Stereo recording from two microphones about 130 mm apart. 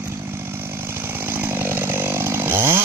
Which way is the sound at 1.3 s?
15° right (ahead or behind).